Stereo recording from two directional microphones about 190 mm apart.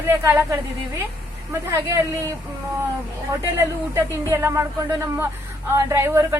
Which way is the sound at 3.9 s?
15° right (ahead or behind).